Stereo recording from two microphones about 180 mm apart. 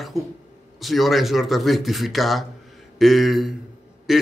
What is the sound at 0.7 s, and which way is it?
Speech, centre (ahead or behind).